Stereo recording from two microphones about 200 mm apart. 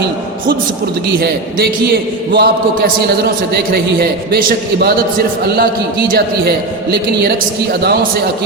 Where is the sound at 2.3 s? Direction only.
55° right (ahead or behind).